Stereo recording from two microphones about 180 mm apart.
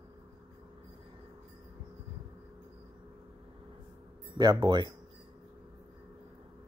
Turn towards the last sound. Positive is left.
turn(degrees=-25)  # may be behind; listen again after turning